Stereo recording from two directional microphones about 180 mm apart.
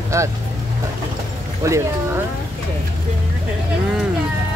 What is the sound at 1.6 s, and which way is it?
Speech, 15° right (ahead or behind).